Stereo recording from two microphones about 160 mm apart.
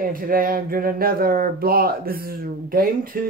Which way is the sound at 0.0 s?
65° right (ahead or behind).